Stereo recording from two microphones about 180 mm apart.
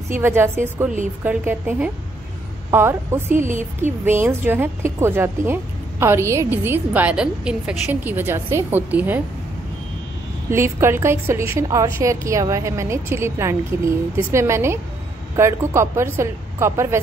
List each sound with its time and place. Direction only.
0.1 s a woman's voice: 15° right (ahead or behind)
3.3 s a woman's voice: 45° right (ahead or behind)
4.0 s a woman's voice: 10° right (ahead or behind)
10.5 s a woman's voice: 15° right (ahead or behind)